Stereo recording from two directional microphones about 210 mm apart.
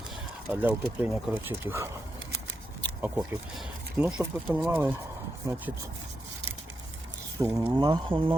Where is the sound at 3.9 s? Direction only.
5° right (ahead or behind).